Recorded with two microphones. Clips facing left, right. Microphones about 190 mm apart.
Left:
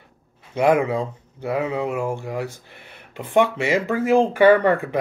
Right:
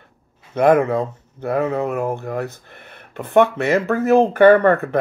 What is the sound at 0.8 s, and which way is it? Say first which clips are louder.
Speech: right 3 dB; 50° right (ahead or behind).